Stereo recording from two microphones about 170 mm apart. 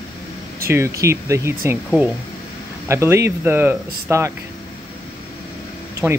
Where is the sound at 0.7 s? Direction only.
15° right (ahead or behind).